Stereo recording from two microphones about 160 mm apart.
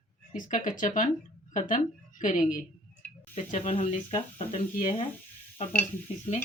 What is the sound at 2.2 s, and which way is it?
Speech, 50° left (ahead or behind).